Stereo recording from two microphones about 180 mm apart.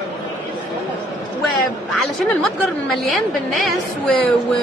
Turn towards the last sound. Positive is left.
turn(degrees=5)  # may be behind; listen again after turning